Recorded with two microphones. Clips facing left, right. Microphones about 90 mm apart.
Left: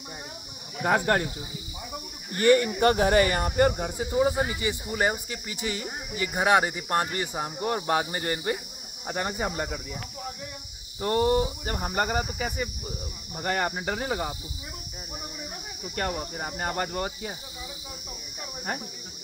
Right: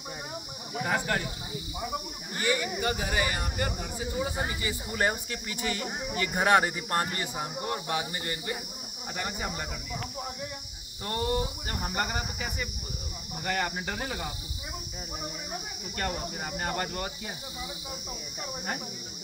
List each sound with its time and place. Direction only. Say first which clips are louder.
0.8 s speech: left 6 dB; 45° left (ahead or behind)
2.4 s speech: left 9 dB; 55° left (ahead or behind); by 4.7 s 30° left (ahead or behind)
4.9 s speech: even; 15° left (ahead or behind)
7.2 s speech: left 3 dB; 35° left (ahead or behind)
11.0 s speech: left 7 dB; 30° left (ahead or behind)
13.3 s speech: left 3 dB; 40° left (ahead or behind)
16.3 s speech: left 2 dB; 35° left (ahead or behind)